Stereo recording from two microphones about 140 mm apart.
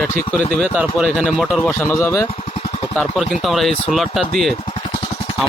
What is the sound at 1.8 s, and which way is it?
Speech, 20° left (ahead or behind).